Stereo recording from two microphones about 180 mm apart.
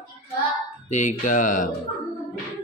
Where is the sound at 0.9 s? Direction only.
45° left (ahead or behind).